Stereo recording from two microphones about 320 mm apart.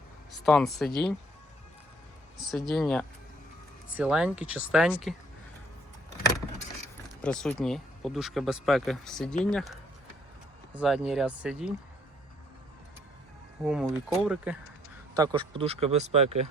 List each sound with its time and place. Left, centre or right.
0.3 s speech: centre
2.6 s speech: centre
7.2 s speech: centre
10.8 s speech: centre
13.7 s speech: centre